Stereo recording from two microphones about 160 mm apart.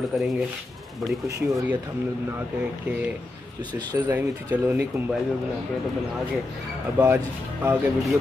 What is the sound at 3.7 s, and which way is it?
Speech, 25° right (ahead or behind).